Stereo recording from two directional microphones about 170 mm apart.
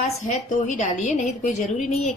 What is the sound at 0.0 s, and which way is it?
A woman's voice, 45° left (ahead or behind).